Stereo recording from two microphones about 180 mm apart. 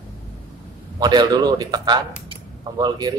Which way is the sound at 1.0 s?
25° right (ahead or behind).